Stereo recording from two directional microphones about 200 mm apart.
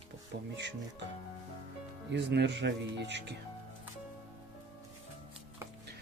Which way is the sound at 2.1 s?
60° right (ahead or behind).